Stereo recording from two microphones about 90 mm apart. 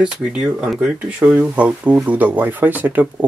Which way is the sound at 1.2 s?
20° right (ahead or behind).